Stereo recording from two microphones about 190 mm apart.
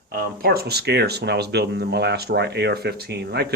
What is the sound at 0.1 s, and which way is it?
Speech, 55° right (ahead or behind).